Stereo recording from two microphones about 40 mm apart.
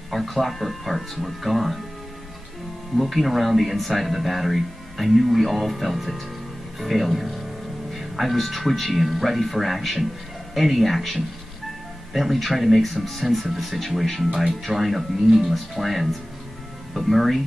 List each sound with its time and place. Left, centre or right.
0.1 s speech: centre
3.0 s speech: centre